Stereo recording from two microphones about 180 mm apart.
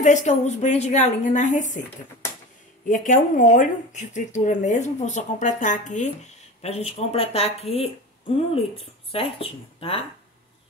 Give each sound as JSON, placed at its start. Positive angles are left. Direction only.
{"t": 0.0, "sound": "speech", "side_deg": 40}
{"t": 2.9, "sound": "speech", "side_deg": 45}
{"t": 9.1, "sound": "speech", "side_deg": 30}